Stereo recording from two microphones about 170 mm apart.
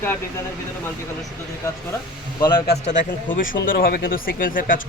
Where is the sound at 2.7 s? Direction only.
40° left (ahead or behind).